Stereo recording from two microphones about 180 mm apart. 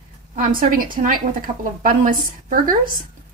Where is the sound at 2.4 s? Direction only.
50° right (ahead or behind).